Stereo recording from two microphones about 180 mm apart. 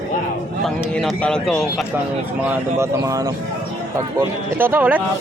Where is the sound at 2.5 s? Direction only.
15° right (ahead or behind).